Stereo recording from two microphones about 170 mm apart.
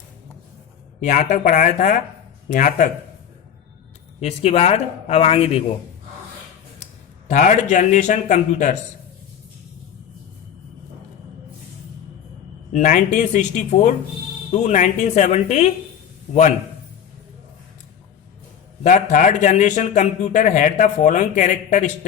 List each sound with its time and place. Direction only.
1.0 s a man's voice: 45° left (ahead or behind)
4.2 s a man's voice: 40° left (ahead or behind)
7.3 s a man's voice: 50° left (ahead or behind)
12.7 s a man's voice: 45° left (ahead or behind)
18.8 s a man's voice: 45° left (ahead or behind)